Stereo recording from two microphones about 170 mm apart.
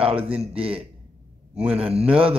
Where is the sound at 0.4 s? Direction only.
35° right (ahead or behind).